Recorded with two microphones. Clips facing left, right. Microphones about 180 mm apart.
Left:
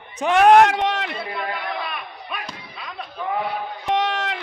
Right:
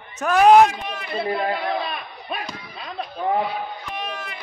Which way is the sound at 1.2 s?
30° right (ahead or behind).